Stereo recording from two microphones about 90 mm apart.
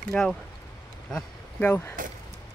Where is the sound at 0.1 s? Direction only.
5° left (ahead or behind).